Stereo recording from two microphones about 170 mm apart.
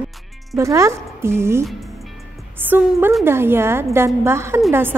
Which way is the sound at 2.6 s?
10° right (ahead or behind).